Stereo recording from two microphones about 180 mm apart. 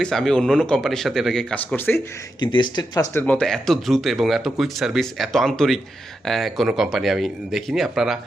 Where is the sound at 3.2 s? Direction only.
5° left (ahead or behind).